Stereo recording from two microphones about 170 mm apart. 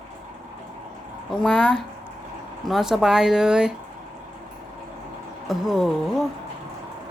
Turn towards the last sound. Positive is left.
turn(degrees=0)  # may be behind; listen again after turning